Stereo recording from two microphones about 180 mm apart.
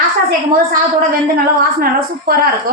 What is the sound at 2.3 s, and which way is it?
Speech, 55° right (ahead or behind).